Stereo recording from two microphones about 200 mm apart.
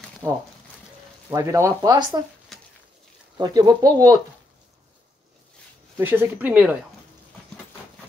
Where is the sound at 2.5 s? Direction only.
Centre (ahead or behind).